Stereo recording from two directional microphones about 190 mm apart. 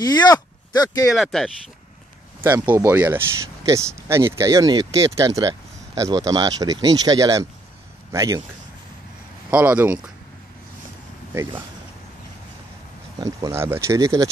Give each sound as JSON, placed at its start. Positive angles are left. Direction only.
{"t": 0.3, "sound": "speech", "side_deg": 20}
{"t": 1.1, "sound": "speech", "side_deg": 0}
{"t": 2.4, "sound": "speech", "side_deg": -10}
{"t": 9.5, "sound": "speech", "side_deg": -10}
{"t": 13.2, "sound": "speech", "side_deg": -15}